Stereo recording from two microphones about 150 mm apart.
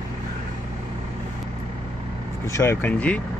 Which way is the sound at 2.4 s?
20° left (ahead or behind).